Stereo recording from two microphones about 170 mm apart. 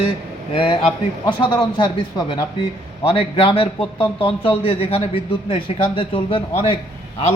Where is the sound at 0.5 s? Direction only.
30° left (ahead or behind).